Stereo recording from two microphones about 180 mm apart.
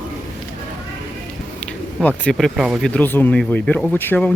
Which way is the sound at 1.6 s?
10° left (ahead or behind).